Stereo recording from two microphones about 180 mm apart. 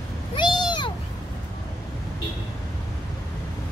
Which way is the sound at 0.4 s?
25° left (ahead or behind).